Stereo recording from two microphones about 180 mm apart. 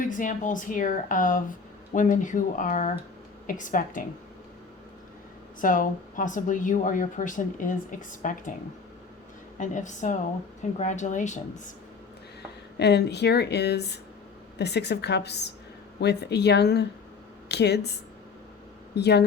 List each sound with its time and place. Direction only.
0.0 s speech: 45° left (ahead or behind)
5.5 s speech: 50° left (ahead or behind)
9.6 s speech: 45° left (ahead or behind)
12.7 s a woman's voice: 65° left (ahead or behind)